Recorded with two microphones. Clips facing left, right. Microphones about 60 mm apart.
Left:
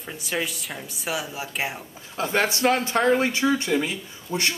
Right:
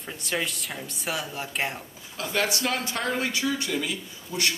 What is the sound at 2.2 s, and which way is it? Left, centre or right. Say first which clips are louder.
Speech: left 4 dB; left.